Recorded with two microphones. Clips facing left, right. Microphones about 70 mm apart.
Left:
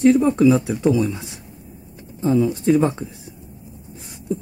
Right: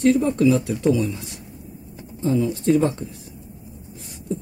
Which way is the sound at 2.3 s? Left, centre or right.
Centre.